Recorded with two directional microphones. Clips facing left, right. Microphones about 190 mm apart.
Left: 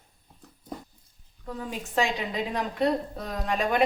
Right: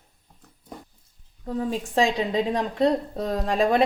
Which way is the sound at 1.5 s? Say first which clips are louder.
Right 8 dB; 30° right (ahead or behind).